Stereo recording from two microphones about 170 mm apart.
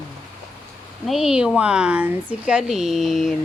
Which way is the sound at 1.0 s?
Centre (ahead or behind).